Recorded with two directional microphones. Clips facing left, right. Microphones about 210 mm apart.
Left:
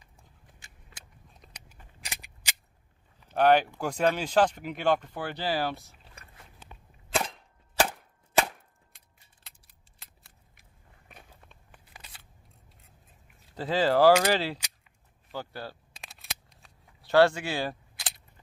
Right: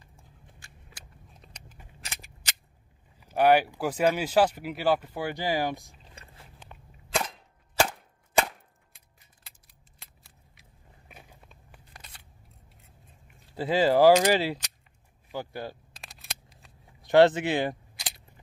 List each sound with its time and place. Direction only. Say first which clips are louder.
0.0 s vehicle: right 3 dB; 20° left (ahead or behind)
1.3 s a sound: even; centre (ahead or behind)
2.0 s cap gun: left 1 dB; 15° left (ahead or behind)
3.2 s speech: right 1 dB; 10° right (ahead or behind)
9.4 s keys jangling: even; centre (ahead or behind)
11.1 s biting: right 1 dB; 5° right (ahead or behind)
11.9 s scissors: left 1 dB; 5° left (ahead or behind)
13.6 s speech: right 2 dB; 10° right (ahead or behind)
16.0 s scissors: even; centre (ahead or behind)
17.0 s speech: right 3 dB; 20° right (ahead or behind)
17.9 s a sound: even; centre (ahead or behind)